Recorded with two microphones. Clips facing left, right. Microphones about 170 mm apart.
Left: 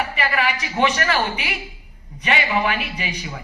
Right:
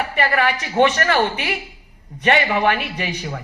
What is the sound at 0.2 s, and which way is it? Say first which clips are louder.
Speech: right 6 dB; 50° right (ahead or behind).